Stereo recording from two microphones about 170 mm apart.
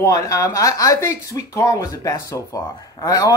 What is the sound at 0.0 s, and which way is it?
Speech, 20° left (ahead or behind).